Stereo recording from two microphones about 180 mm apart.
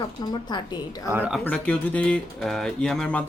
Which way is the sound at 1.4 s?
5° left (ahead or behind).